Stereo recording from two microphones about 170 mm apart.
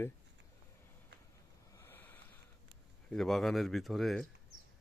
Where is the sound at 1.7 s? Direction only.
15° left (ahead or behind).